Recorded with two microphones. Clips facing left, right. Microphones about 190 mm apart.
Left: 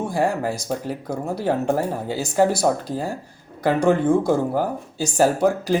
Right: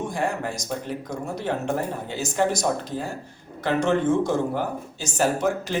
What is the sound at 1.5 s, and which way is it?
Speech, 40° left (ahead or behind).